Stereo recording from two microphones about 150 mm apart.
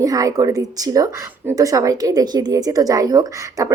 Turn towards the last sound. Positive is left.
turn(degrees=-25)  # may be behind; listen again after turning